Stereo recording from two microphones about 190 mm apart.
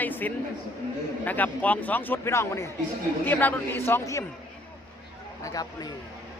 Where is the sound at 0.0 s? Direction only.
10° left (ahead or behind).